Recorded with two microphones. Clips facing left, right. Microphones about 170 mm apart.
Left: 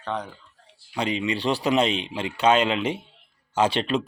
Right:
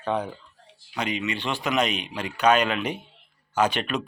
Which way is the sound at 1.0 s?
30° left (ahead or behind).